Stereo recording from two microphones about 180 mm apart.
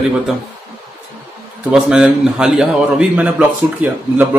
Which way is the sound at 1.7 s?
5° right (ahead or behind).